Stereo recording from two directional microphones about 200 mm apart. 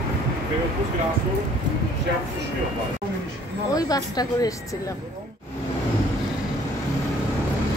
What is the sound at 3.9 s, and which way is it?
Speech, 20° left (ahead or behind).